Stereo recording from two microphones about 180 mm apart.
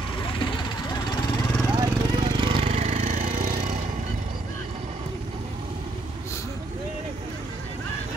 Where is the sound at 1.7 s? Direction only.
25° right (ahead or behind); by 3.8 s 40° right (ahead or behind).